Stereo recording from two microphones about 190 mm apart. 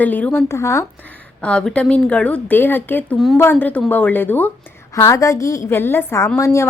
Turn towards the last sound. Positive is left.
turn(degrees=15)  # may be behind; listen again after turning